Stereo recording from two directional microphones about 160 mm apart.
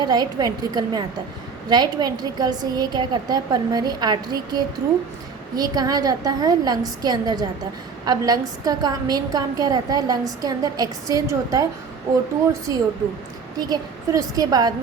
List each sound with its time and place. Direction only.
0.0 s a woman's voice: 25° right (ahead or behind)
13.6 s a woman's voice: 25° right (ahead or behind)